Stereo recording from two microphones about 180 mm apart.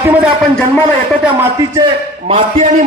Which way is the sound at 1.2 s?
15° right (ahead or behind).